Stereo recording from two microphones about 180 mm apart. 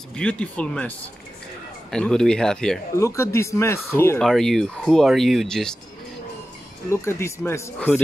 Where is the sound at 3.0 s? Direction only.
15° left (ahead or behind).